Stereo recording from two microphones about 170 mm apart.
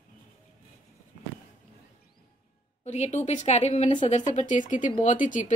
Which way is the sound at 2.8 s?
40° left (ahead or behind).